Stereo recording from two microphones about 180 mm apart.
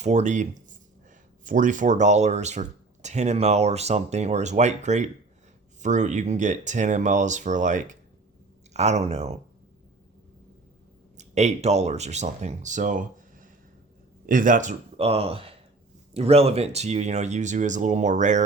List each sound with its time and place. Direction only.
0.0 s speech: 40° right (ahead or behind)
11.2 s speech: 40° right (ahead or behind)